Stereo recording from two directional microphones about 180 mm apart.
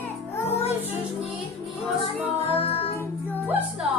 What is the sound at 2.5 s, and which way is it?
Music, 35° left (ahead or behind).